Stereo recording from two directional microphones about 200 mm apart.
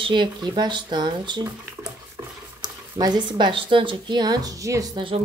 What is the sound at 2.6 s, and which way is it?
Speech, 20° right (ahead or behind).